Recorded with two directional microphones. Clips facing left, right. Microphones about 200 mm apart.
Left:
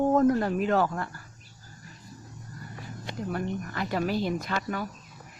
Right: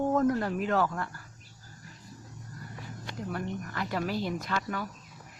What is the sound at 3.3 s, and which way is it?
A woman's voice, 25° left (ahead or behind).